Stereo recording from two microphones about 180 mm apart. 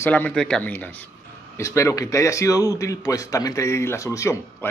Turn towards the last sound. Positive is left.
turn(degrees=15)  # may be behind; listen again after turning